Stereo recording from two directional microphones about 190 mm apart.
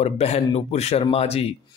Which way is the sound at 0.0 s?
30° left (ahead or behind).